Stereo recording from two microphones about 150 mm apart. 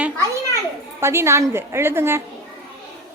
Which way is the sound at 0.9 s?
15° right (ahead or behind).